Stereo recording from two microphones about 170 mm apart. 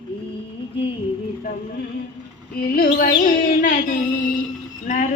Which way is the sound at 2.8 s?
60° left (ahead or behind).